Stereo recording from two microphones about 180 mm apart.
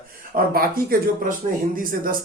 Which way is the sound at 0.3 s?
55° right (ahead or behind).